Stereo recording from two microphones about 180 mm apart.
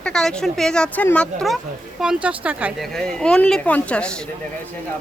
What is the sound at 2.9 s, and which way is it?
Speech, 5° left (ahead or behind).